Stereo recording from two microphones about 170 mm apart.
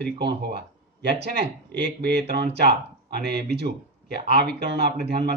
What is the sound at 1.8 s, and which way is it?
Speech, 80° right.